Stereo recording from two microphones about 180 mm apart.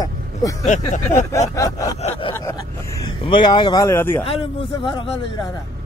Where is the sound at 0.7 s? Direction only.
45° left (ahead or behind).